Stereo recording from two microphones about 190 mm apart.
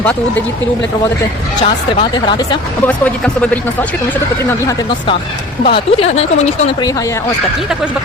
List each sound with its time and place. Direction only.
0.0 s speech: 5° left (ahead or behind)
1.6 s speech: 25° left (ahead or behind)
2.8 s speech: 10° left (ahead or behind)
5.6 s speech: 30° left (ahead or behind)